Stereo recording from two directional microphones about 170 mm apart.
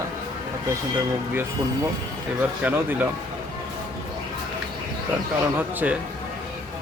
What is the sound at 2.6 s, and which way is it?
Speech, 10° right (ahead or behind).